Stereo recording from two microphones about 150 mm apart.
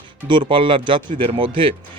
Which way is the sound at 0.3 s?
35° right (ahead or behind).